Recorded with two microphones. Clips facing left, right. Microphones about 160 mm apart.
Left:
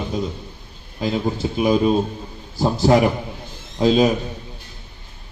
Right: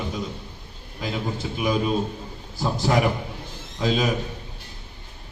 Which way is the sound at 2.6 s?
35° left (ahead or behind).